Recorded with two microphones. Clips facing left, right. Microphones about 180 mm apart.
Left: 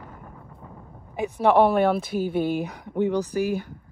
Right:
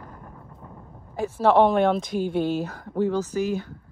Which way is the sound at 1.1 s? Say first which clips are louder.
Even; 15° left (ahead or behind).